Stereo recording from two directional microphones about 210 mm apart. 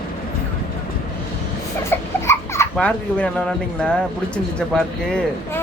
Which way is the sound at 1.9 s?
15° left (ahead or behind).